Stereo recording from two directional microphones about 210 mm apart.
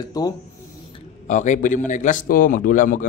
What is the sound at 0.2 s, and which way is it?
Speech, 15° left (ahead or behind).